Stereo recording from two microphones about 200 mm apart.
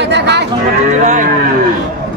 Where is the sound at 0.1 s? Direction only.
55° right (ahead or behind).